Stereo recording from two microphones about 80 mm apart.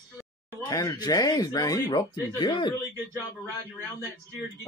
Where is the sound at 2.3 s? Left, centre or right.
Left.